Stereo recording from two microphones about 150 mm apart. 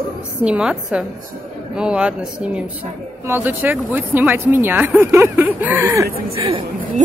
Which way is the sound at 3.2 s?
15° right (ahead or behind).